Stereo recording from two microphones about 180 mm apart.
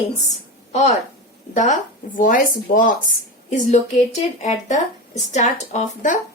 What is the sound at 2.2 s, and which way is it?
A woman's voice, 45° left (ahead or behind).